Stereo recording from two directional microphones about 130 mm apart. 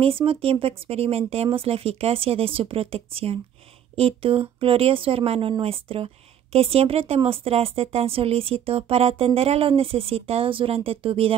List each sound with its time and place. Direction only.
0.0 s speech: 45° right (ahead or behind)